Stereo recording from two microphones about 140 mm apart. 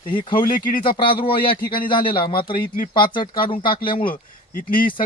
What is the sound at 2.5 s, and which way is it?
Speech, 85° left.